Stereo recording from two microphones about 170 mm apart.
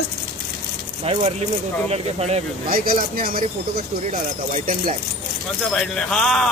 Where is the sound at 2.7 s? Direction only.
55° right (ahead or behind).